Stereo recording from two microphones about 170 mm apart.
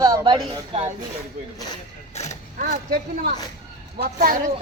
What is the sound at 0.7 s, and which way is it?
Speech, 40° right (ahead or behind).